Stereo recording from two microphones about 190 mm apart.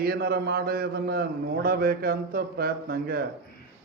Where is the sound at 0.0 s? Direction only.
55° right (ahead or behind).